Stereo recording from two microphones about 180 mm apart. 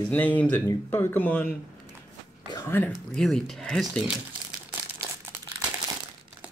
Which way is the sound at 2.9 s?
Centre (ahead or behind).